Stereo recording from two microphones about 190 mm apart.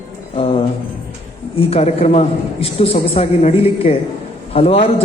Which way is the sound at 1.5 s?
35° left (ahead or behind).